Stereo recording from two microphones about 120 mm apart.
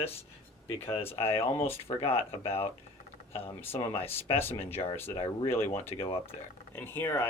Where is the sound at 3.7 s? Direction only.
55° left (ahead or behind).